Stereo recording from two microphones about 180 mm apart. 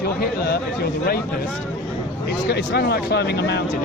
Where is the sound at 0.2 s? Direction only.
60° left (ahead or behind).